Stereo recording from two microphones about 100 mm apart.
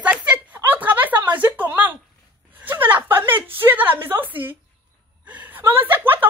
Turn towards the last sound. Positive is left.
turn(degrees=-20)  # may be behind; listen again after turning